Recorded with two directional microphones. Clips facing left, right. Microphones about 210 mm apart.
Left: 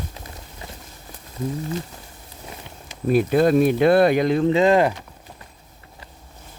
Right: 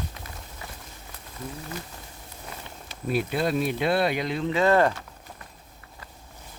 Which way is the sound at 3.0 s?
45° left (ahead or behind).